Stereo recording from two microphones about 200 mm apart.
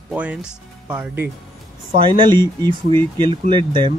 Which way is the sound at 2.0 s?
25° right (ahead or behind).